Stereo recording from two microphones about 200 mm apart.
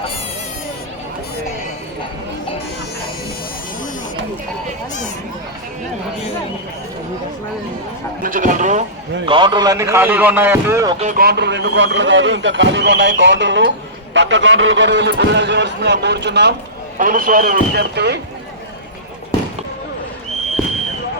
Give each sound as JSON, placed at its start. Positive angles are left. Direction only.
{"t": 8.2, "sound": "speech", "side_deg": -40}
{"t": 9.2, "sound": "a man's voice", "side_deg": -25}
{"t": 10.9, "sound": "speech", "side_deg": -35}
{"t": 11.2, "sound": "speech", "side_deg": -55}
{"t": 17.0, "sound": "speech", "side_deg": -40}